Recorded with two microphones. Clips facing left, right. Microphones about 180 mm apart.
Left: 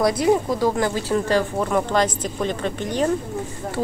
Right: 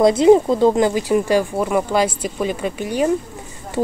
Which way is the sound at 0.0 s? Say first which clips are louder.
Right 7 dB; 25° right (ahead or behind).